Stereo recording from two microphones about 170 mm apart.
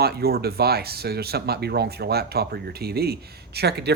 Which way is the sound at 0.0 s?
65° right (ahead or behind).